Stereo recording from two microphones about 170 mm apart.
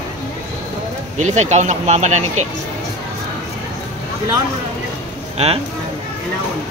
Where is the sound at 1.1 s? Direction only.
45° right (ahead or behind).